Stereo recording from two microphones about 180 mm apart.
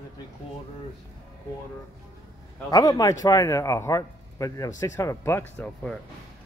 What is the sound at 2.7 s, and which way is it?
A man's voice, 20° left (ahead or behind).